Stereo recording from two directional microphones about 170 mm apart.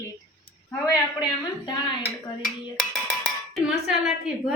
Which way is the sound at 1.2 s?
25° left (ahead or behind).